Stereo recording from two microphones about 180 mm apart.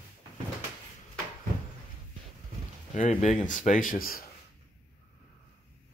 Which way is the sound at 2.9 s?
40° left (ahead or behind).